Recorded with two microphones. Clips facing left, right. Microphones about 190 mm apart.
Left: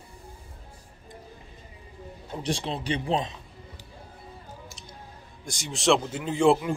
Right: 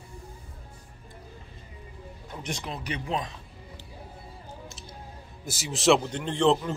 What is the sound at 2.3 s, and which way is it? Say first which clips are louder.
Speech: left 6 dB; 30° left (ahead or behind).